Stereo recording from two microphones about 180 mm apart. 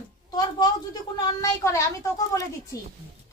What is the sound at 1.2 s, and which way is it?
A woman's voice, 20° left (ahead or behind).